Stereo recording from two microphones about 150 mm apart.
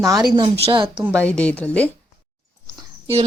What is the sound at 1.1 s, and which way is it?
Speech, 10° left (ahead or behind).